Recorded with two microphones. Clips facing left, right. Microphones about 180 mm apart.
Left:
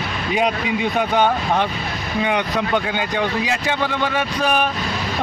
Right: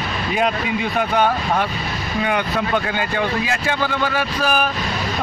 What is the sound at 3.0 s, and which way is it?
A man's voice, 15° left (ahead or behind).